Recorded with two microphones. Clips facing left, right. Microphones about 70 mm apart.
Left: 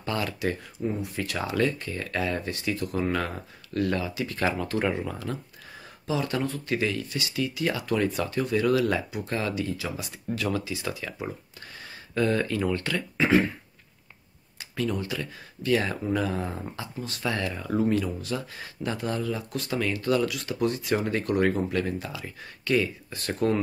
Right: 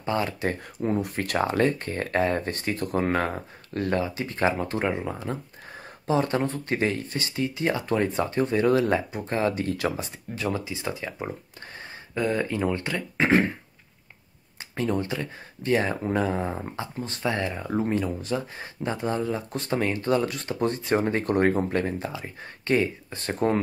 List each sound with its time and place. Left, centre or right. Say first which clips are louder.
0.0 s speech: right 2 dB; right
0.7 s speech: right 4 dB; right
6.0 s speech: right 4 dB; right
9.6 s speech: right 4 dB; right
9.9 s speech: left 1 dB; right
12.1 s speech: left 1 dB; centre
13.2 s speech: right 1 dB; right
14.8 s speech: right 2 dB; right